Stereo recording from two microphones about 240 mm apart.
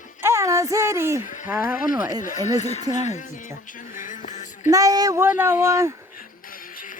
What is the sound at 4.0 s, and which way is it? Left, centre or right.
Music, left.